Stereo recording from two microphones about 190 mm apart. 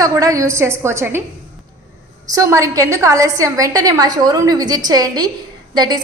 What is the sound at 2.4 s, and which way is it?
A woman's voice, 15° right (ahead or behind).